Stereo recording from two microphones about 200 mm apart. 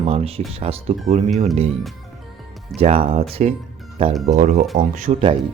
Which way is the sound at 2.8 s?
30° right (ahead or behind).